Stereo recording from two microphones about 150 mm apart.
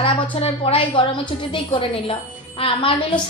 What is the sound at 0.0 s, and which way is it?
A woman's voice, 40° left (ahead or behind).